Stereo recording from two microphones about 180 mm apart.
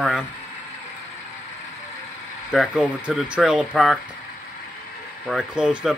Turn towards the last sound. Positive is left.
turn(degrees=-5)  # may be behind; listen again after turning